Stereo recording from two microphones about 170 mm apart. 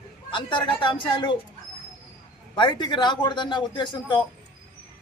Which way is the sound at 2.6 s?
25° left (ahead or behind).